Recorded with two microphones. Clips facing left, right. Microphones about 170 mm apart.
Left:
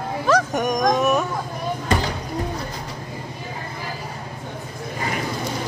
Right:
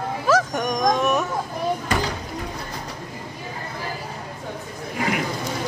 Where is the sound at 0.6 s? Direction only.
5° left (ahead or behind).